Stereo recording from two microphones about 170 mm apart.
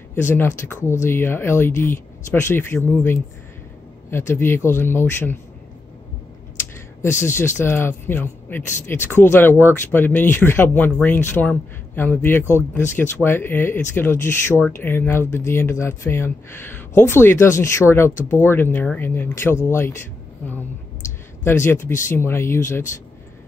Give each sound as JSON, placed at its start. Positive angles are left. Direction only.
{"t": 0.1, "sound": "speech", "side_deg": 15}
{"t": 7.0, "sound": "speech", "side_deg": 15}
{"t": 21.5, "sound": "speech", "side_deg": 15}